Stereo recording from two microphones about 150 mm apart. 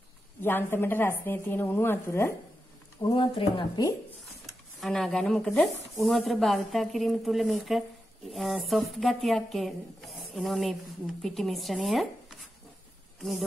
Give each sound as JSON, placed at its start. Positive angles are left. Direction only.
{"t": 0.4, "sound": "speech", "side_deg": 15}
{"t": 3.0, "sound": "speech", "side_deg": 35}
{"t": 4.5, "sound": "speech", "side_deg": 0}